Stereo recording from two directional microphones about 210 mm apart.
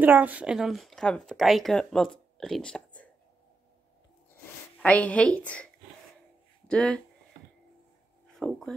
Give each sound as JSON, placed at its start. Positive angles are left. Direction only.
{"t": 0.0, "sound": "speech", "side_deg": -5}
{"t": 4.8, "sound": "speech", "side_deg": 5}
{"t": 6.7, "sound": "speech", "side_deg": 5}
{"t": 8.3, "sound": "speech", "side_deg": 0}